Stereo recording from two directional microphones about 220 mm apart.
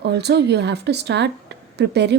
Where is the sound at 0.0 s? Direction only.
50° right (ahead or behind).